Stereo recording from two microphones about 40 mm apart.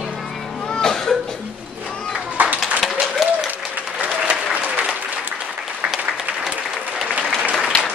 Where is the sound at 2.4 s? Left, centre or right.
Right.